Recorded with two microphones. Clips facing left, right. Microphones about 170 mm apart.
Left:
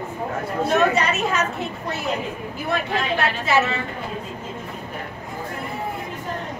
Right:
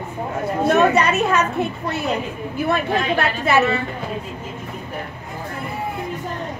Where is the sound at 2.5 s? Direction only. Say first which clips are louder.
Right 5 dB; 60° right (ahead or behind).